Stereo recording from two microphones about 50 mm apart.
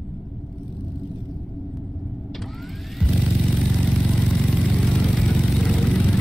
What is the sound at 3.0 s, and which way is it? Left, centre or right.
Vehicle, centre.